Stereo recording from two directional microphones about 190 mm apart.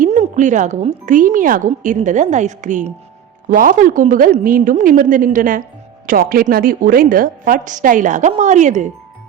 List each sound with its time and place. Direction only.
0.0 s a woman's voice: 40° right (ahead or behind)